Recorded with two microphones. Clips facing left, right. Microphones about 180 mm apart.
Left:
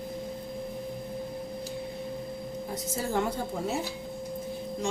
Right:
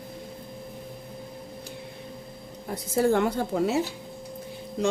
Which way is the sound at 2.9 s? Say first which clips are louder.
Right 8 dB; 65° right (ahead or behind).